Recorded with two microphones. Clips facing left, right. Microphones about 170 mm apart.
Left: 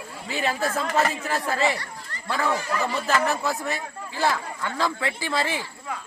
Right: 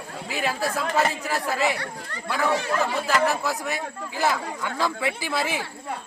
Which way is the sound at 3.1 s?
Centre (ahead or behind).